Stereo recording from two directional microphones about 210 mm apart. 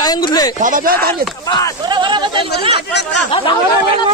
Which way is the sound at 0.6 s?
40° right (ahead or behind).